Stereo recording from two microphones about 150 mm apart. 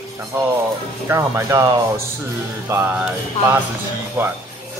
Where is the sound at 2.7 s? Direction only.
15° right (ahead or behind).